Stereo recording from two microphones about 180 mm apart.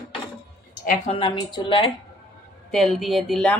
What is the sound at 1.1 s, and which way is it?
Speech, 25° left (ahead or behind).